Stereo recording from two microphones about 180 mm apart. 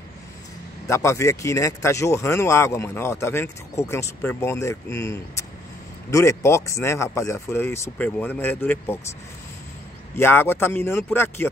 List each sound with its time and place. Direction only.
0.8 s speech: 15° left (ahead or behind)
10.1 s speech: 15° left (ahead or behind)